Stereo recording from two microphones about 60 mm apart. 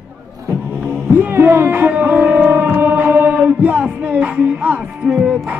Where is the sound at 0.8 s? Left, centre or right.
Right.